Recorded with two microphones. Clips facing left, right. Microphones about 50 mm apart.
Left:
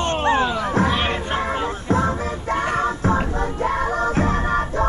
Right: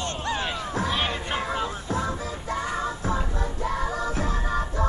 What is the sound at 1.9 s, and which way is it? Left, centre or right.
Music, left.